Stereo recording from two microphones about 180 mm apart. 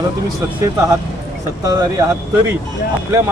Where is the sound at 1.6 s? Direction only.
20° right (ahead or behind).